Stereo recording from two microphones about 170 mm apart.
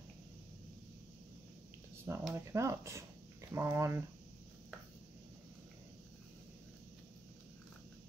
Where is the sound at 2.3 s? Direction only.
15° right (ahead or behind).